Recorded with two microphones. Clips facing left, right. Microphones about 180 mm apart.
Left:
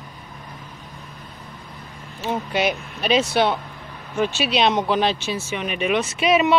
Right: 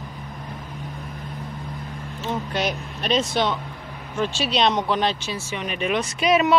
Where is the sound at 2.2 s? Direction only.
5° left (ahead or behind).